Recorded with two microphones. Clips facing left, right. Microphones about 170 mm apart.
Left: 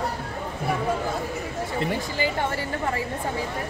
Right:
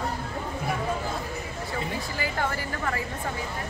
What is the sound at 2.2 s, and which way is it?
Speech, 25° left (ahead or behind).